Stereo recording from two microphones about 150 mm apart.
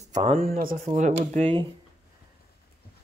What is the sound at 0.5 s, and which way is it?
Speech, 65° right (ahead or behind).